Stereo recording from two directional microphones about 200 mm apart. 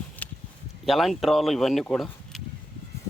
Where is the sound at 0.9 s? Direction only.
Centre (ahead or behind).